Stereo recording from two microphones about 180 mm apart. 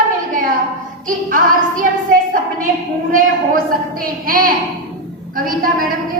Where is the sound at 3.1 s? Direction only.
55° right (ahead or behind).